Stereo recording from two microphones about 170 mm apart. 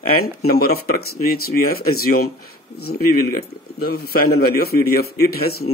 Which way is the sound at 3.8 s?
65° left (ahead or behind).